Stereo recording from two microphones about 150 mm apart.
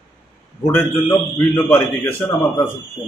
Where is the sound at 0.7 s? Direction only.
15° left (ahead or behind).